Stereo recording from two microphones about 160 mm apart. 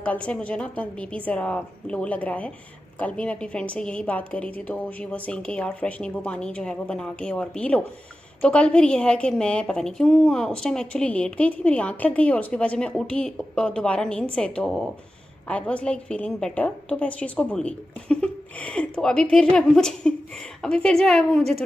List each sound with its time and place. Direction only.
0.0 s a woman's voice: 5° left (ahead or behind)